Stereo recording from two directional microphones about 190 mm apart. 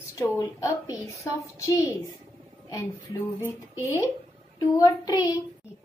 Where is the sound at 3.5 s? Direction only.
15° left (ahead or behind).